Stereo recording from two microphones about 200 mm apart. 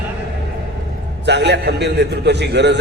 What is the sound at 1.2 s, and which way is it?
A man's voice, 60° right (ahead or behind).